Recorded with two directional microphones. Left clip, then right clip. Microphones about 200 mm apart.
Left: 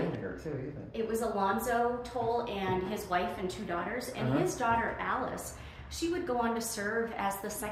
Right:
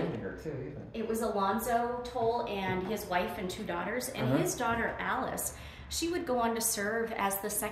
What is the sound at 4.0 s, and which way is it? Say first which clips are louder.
A woman's voice: right 2 dB; 55° right (ahead or behind).